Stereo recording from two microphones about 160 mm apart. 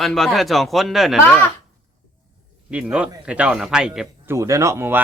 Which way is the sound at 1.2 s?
10° left (ahead or behind).